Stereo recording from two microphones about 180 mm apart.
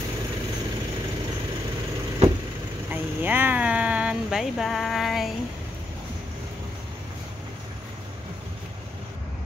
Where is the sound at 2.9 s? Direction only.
10° right (ahead or behind).